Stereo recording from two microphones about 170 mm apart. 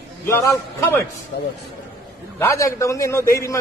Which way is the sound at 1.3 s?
70° left (ahead or behind).